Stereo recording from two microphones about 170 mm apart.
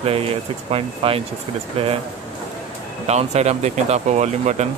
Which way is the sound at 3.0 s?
40° right (ahead or behind).